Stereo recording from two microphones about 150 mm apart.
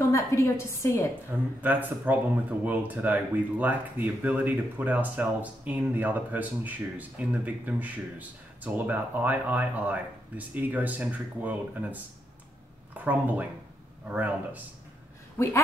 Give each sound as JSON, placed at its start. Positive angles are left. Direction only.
{"t": 0.1, "sound": "a woman's voice", "side_deg": 20}
{"t": 1.3, "sound": "speech", "side_deg": -10}
{"t": 15.3, "sound": "a woman's voice", "side_deg": 20}